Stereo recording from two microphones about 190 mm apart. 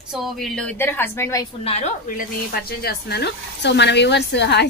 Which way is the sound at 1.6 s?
35° left (ahead or behind).